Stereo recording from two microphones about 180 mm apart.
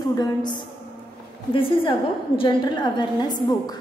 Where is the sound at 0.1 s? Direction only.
20° left (ahead or behind).